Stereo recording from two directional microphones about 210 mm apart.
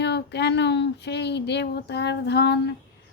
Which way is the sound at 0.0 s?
55° left (ahead or behind).